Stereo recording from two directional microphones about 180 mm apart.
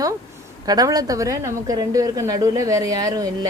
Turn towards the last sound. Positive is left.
turn(degrees=-20)  # may be behind; listen again after turning